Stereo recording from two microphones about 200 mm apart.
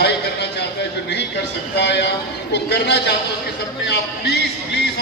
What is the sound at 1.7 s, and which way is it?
A man's voice, 60° left (ahead or behind).